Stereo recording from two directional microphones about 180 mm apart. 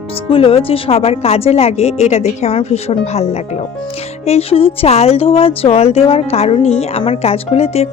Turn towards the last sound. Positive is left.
turn(degrees=35)  # may be behind; listen again after turning